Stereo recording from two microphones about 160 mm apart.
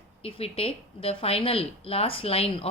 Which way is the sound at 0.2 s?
35° left (ahead or behind).